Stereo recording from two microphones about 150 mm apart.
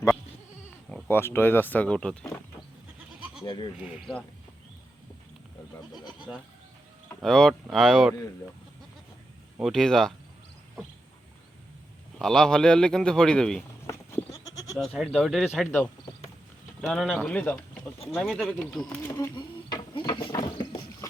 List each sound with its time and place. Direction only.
1.0 s speech: 15° left (ahead or behind)
3.4 s speech: 30° left (ahead or behind)
3.8 s speech: 5° right (ahead or behind)
7.2 s a man's voice: 5° left (ahead or behind)
9.6 s a man's voice: centre (ahead or behind)
12.2 s a man's voice: centre (ahead or behind)
13.8 s sheep: 20° left (ahead or behind)
14.8 s a man's voice: centre (ahead or behind)
16.8 s a man's voice: centre (ahead or behind)
19.0 s speech: 20° left (ahead or behind)
20.1 s ratchet: 35° left (ahead or behind)